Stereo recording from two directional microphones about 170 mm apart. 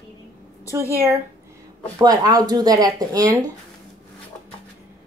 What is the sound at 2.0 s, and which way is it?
Speech, 20° right (ahead or behind).